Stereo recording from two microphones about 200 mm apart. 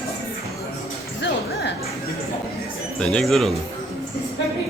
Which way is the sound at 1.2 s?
60° left (ahead or behind).